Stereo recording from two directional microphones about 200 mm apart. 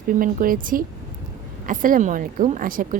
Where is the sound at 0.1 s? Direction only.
45° right (ahead or behind).